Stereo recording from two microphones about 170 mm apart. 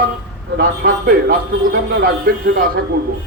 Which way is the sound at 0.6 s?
65° right (ahead or behind).